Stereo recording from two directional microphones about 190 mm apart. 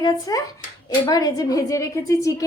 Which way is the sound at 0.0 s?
20° left (ahead or behind).